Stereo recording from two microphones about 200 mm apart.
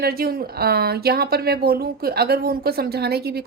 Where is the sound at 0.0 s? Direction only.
50° right (ahead or behind).